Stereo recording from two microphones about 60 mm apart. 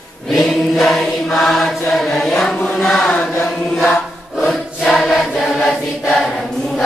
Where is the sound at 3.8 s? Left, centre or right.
Left.